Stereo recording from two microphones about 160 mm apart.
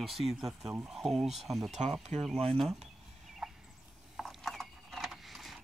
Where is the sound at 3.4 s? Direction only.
Centre (ahead or behind).